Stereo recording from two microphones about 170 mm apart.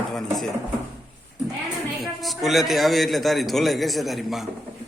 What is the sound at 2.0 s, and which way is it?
Speech, centre (ahead or behind).